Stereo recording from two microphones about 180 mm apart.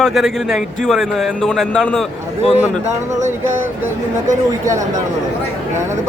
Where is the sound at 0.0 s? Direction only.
Centre (ahead or behind).